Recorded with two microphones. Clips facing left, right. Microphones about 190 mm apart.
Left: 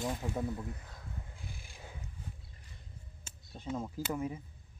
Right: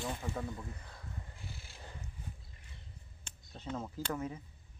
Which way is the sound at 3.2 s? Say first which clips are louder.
Left 1 dB; 5° left (ahead or behind).